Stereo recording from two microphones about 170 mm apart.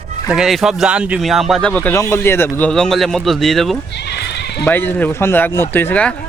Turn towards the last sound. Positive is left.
turn(degrees=10)  # may be behind; listen again after turning